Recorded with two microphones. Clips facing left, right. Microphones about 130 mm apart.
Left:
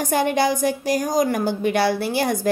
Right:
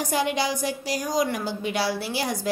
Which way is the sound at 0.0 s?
55° left (ahead or behind).